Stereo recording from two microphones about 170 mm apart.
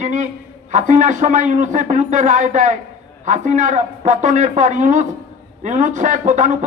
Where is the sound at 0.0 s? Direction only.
45° right (ahead or behind).